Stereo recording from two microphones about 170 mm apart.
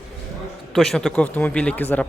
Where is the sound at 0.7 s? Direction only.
Centre (ahead or behind).